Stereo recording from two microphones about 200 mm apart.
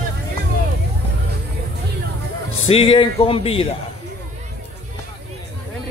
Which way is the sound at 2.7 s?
25° left (ahead or behind).